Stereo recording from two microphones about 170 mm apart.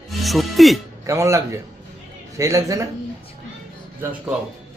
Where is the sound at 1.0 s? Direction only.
20° right (ahead or behind).